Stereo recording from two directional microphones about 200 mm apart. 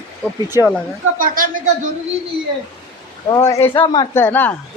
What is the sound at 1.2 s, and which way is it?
Speech, 45° right (ahead or behind).